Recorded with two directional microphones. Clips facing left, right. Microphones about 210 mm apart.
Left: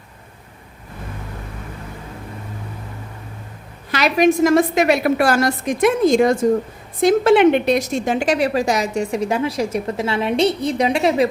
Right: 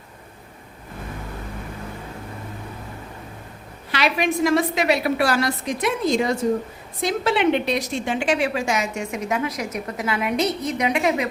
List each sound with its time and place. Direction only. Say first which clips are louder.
3.9 s a woman's voice: left 6 dB; 45° left (ahead or behind)